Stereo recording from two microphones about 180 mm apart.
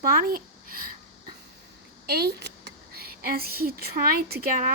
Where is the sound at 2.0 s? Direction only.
60° right (ahead or behind).